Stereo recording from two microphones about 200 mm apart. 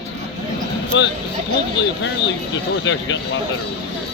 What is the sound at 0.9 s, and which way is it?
Speech, 65° left (ahead or behind).